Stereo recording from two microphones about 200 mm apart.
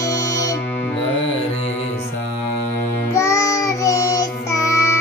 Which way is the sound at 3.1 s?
15° left (ahead or behind).